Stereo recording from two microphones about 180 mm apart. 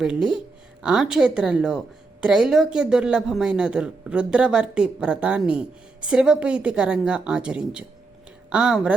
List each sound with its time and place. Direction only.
0.0 s speech: 5° right (ahead or behind)